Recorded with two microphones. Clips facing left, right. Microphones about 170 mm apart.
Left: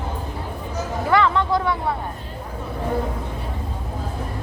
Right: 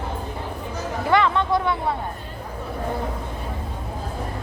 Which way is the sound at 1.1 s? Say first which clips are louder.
Even; 20° right (ahead or behind).